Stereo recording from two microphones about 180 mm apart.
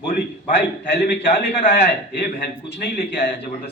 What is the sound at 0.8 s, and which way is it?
Speech, 60° left (ahead or behind).